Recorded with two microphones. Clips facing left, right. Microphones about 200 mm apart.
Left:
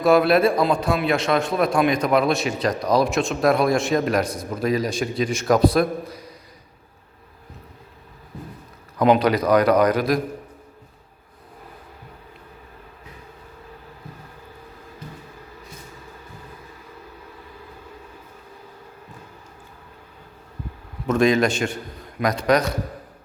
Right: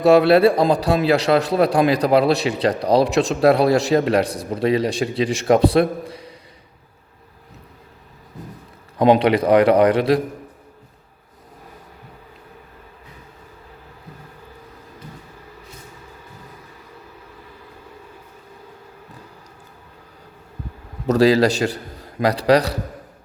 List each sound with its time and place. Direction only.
0.0 s a man's voice: 30° right (ahead or behind)
9.0 s a man's voice: 30° right (ahead or behind)
21.1 s a man's voice: 35° right (ahead or behind)